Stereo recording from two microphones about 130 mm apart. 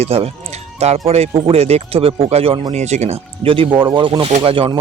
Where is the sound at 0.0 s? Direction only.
50° right (ahead or behind).